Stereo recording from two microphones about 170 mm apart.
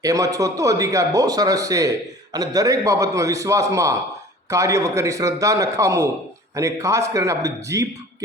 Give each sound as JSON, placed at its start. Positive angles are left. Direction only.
{"t": 0.0, "sound": "a man's voice", "side_deg": -20}